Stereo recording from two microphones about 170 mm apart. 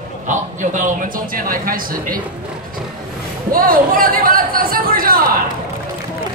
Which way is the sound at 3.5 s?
55° right (ahead or behind).